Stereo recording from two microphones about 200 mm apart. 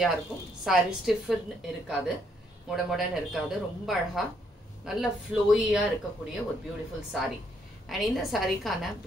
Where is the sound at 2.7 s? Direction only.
Centre (ahead or behind).